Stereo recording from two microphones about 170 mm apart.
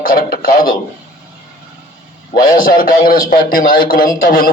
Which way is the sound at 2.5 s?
55° left (ahead or behind).